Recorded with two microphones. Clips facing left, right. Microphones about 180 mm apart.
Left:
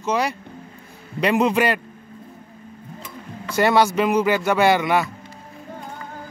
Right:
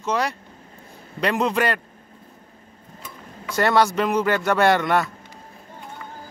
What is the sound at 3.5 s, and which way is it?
Speech, 5° left (ahead or behind).